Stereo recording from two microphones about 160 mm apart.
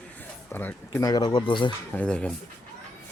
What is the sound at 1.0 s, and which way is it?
Speech, 25° left (ahead or behind).